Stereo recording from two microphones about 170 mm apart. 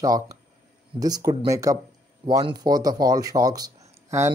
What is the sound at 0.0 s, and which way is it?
Speech, 20° right (ahead or behind).